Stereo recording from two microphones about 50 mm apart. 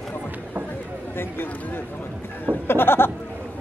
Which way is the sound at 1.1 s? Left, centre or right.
Left.